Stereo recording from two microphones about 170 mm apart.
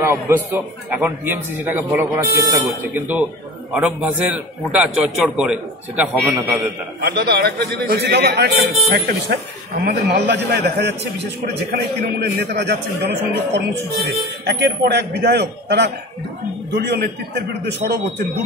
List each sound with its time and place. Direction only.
0.0 s a man's voice: 15° right (ahead or behind)
7.0 s a man's voice: 65° right (ahead or behind); by 17.4 s 80° right